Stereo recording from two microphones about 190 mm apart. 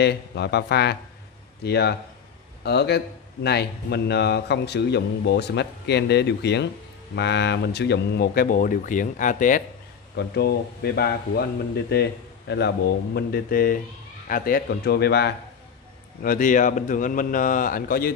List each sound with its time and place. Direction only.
0.0 s speech: 60° left (ahead or behind); by 9.6 s 45° left (ahead or behind)
10.1 s speech: 60° left (ahead or behind)
16.2 s speech: 45° left (ahead or behind)